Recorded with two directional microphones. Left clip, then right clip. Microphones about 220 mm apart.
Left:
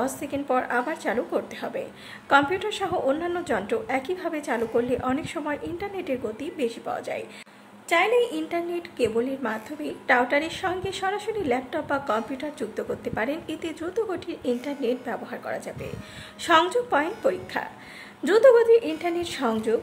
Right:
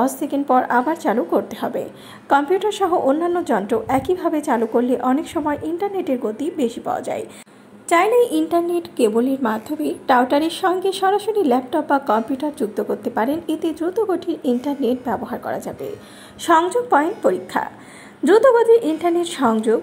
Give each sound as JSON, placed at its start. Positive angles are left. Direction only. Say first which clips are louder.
{"t": 0.0, "sound": "a woman's voice", "louder": "right 8 dB", "side_deg": -10}
{"t": 1.1, "sound": "a woman's voice", "louder": "right 7 dB", "side_deg": 0}